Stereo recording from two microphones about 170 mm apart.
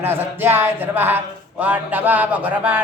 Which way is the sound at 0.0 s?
10° right (ahead or behind).